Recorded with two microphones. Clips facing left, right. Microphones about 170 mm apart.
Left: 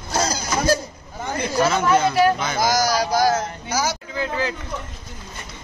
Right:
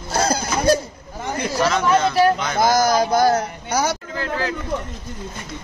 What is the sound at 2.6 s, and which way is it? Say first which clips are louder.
Speech: right 4 dB; 55° right (ahead or behind).